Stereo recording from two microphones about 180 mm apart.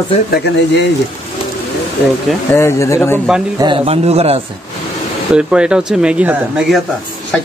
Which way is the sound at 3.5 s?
30° right (ahead or behind).